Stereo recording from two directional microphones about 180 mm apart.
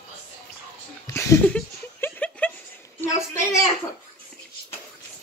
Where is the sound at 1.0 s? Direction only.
15° left (ahead or behind).